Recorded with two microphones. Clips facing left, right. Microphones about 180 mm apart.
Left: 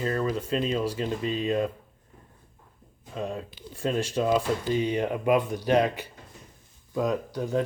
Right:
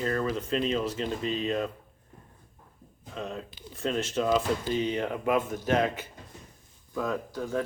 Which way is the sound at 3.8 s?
10° left (ahead or behind).